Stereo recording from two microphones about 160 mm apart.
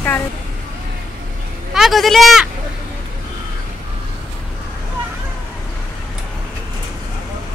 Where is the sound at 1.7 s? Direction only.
Centre (ahead or behind).